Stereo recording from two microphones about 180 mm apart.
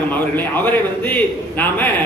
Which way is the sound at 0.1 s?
10° left (ahead or behind).